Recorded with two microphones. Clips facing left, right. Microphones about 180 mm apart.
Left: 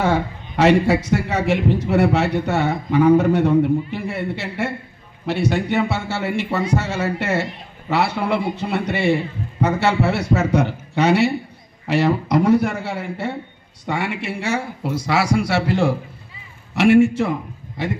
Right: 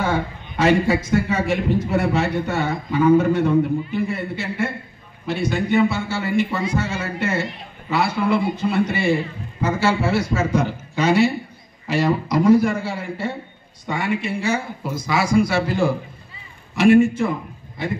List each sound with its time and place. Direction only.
0.6 s a man's voice: 70° left (ahead or behind)